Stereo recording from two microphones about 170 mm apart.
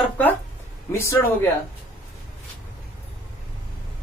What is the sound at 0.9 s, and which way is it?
Speech, 15° left (ahead or behind).